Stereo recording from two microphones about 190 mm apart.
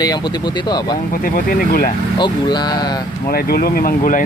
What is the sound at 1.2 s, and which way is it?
Speech, 50° left (ahead or behind).